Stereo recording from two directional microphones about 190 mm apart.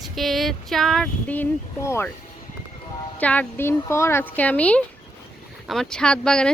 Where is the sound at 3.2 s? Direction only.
10° left (ahead or behind).